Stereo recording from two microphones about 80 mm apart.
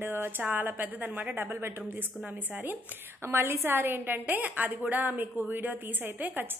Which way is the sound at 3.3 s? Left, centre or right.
Right.